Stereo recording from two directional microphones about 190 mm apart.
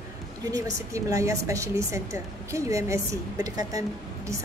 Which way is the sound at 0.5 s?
15° right (ahead or behind).